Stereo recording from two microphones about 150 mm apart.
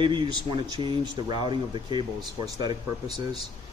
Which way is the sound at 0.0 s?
30° right (ahead or behind).